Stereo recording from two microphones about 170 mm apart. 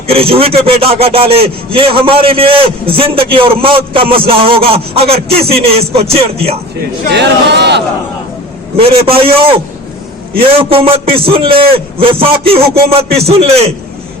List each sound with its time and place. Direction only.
0.1 s a man's voice: 35° right (ahead or behind)
7.1 s speech: 85° right
8.7 s a man's voice: 35° right (ahead or behind)